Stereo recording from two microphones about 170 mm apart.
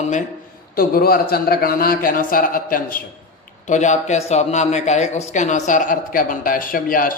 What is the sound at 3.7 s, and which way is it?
Speech, 45° left (ahead or behind).